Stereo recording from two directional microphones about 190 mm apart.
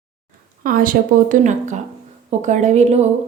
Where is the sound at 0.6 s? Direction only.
50° right (ahead or behind).